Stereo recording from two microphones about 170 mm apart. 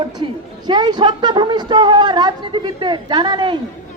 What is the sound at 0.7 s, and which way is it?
A woman's voice, 25° right (ahead or behind).